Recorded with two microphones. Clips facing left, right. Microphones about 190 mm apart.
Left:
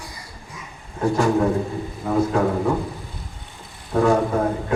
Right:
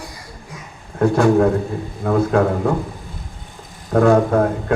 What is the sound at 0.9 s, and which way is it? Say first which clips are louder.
A man's voice: right 5 dB; 60° right (ahead or behind).